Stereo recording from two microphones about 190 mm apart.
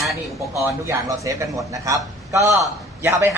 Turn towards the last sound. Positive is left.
turn(degrees=-15)  # may be behind; listen again after turning